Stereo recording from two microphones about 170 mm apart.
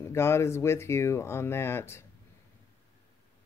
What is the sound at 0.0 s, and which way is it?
Speech, 15° left (ahead or behind).